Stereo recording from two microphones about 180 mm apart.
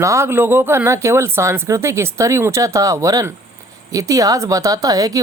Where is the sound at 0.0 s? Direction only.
15° right (ahead or behind).